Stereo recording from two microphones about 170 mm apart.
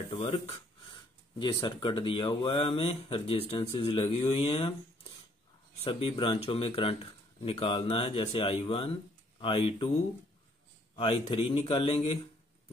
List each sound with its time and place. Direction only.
0.2 s speech: 40° left (ahead or behind)
1.4 s speech: 25° left (ahead or behind)
5.9 s speech: 30° left (ahead or behind)
11.0 s speech: 30° left (ahead or behind)